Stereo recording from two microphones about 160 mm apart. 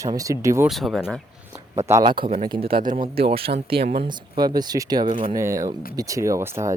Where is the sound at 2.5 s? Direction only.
35° right (ahead or behind).